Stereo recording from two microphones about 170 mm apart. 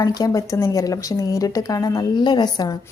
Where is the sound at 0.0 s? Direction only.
20° left (ahead or behind).